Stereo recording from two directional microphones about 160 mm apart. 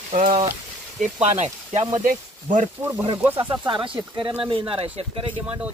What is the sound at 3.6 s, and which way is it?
Speech, 30° right (ahead or behind).